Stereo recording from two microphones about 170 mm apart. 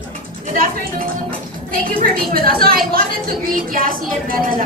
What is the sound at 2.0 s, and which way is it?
Speech, 60° right (ahead or behind).